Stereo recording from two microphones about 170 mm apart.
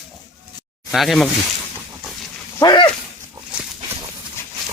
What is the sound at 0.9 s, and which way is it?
Speech, centre (ahead or behind).